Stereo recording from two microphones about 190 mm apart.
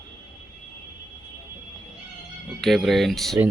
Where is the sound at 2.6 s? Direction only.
Centre (ahead or behind).